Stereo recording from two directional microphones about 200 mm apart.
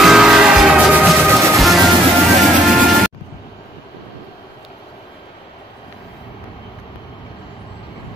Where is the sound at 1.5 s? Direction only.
Centre (ahead or behind).